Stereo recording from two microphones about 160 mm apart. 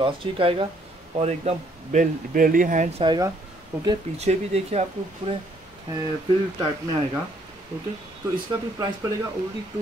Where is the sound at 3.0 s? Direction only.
25° right (ahead or behind).